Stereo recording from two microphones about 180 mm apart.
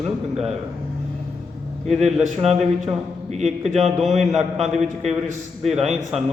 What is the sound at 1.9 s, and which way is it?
Speech, centre (ahead or behind).